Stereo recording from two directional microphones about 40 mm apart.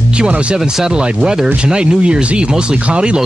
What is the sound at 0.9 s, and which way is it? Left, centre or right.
Speech, right.